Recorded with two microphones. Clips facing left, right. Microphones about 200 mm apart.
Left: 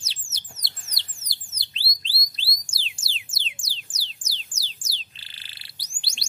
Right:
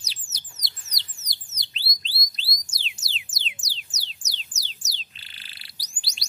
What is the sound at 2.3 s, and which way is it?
Music, 30° left (ahead or behind).